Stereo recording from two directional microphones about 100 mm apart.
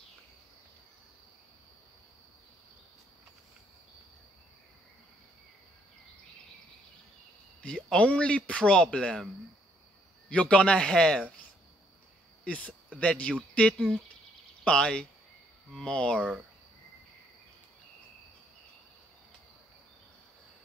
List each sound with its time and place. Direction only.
7.6 s speech: 10° left (ahead or behind)
10.3 s speech: 10° left (ahead or behind)
12.4 s speech: 15° left (ahead or behind)
16.2 s speech: 5° right (ahead or behind)